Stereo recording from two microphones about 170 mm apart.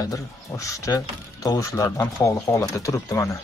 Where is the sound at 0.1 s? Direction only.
20° left (ahead or behind).